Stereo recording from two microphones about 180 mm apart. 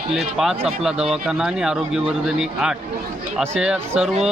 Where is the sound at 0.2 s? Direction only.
Centre (ahead or behind).